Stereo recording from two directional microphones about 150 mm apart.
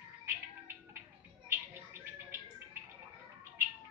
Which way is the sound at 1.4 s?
15° right (ahead or behind).